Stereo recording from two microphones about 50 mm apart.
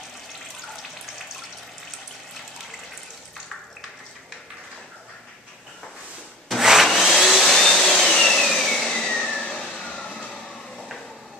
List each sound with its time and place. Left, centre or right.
6.6 s vacuum cleaner: centre
8.5 s vehicle: centre